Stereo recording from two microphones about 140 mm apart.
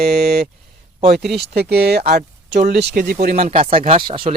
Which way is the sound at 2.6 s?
90° right.